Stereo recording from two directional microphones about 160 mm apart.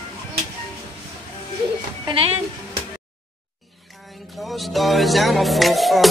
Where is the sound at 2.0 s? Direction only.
35° right (ahead or behind).